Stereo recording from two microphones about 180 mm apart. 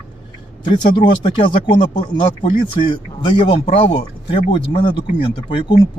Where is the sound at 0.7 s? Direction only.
25° left (ahead or behind).